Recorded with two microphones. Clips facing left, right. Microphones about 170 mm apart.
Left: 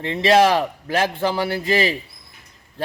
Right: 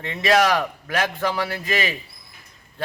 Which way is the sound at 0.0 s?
30° left (ahead or behind).